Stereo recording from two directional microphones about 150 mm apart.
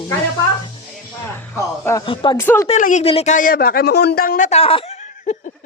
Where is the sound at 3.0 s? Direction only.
40° left (ahead or behind).